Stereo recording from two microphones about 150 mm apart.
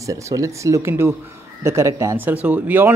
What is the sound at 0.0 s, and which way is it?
Speech, 20° right (ahead or behind).